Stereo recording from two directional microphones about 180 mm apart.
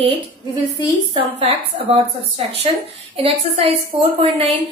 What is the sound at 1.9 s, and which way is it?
A woman's voice, 35° right (ahead or behind).